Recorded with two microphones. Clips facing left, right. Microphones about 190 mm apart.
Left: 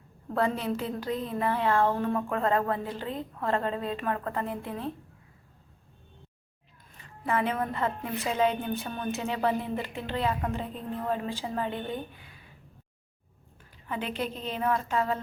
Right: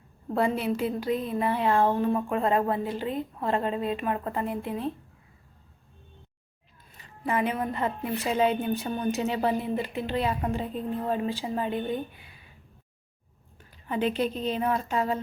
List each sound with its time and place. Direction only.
0.3 s a woman's voice: 10° right (ahead or behind)
7.3 s a woman's voice: 15° right (ahead or behind)
13.8 s a woman's voice: 25° right (ahead or behind)